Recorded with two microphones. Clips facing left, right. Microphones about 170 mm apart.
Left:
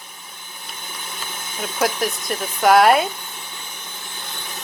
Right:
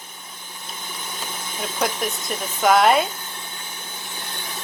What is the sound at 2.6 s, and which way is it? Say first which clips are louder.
Speech: left 3 dB; centre (ahead or behind).